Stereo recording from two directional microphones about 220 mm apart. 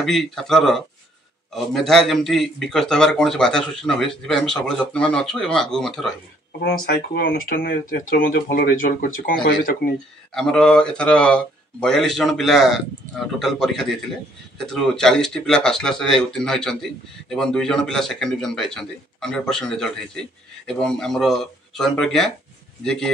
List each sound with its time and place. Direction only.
0.0 s speech: centre (ahead or behind)
6.6 s speech: 40° left (ahead or behind)
10.3 s speech: 5° left (ahead or behind)